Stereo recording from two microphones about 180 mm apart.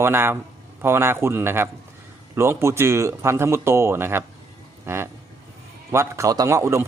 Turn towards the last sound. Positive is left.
turn(degrees=-15)  # may be behind; listen again after turning